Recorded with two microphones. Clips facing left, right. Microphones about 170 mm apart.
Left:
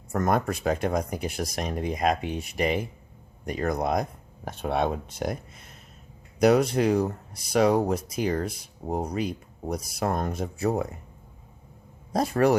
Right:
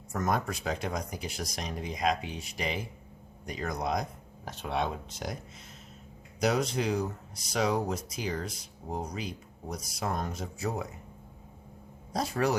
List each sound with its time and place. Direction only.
0.1 s speech: 55° left (ahead or behind)
6.4 s speech: 60° left (ahead or behind)
12.1 s speech: 55° left (ahead or behind)